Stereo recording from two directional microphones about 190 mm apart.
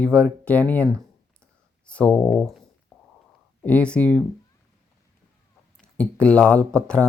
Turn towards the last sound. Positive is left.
turn(degrees=5)  # may be behind; listen again after turning